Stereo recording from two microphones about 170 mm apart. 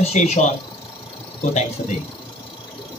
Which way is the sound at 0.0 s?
40° left (ahead or behind).